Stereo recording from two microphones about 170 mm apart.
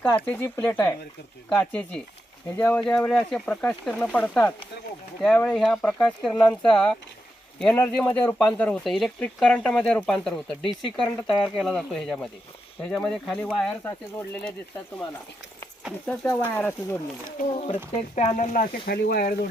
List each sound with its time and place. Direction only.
0.0 s speech: 10° left (ahead or behind)
16.0 s speech: 10° left (ahead or behind)
17.5 s speech: 35° left (ahead or behind)
17.9 s speech: 45° left (ahead or behind); by 19.3 s 65° left (ahead or behind)